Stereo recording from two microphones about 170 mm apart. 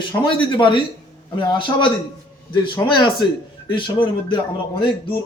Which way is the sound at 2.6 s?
25° left (ahead or behind).